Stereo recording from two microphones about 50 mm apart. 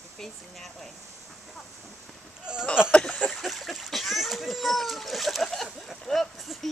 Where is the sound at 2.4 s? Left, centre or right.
Centre.